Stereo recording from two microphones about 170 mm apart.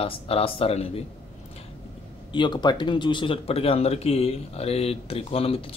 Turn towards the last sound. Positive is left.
turn(degrees=35)  # may be behind; listen again after turning